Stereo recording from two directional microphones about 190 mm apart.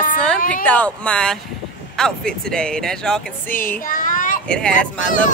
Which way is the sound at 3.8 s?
45° left (ahead or behind).